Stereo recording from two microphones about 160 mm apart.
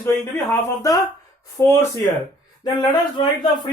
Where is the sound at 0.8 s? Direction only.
20° left (ahead or behind).